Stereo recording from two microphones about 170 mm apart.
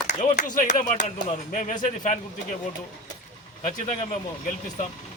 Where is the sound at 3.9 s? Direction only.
50° left (ahead or behind).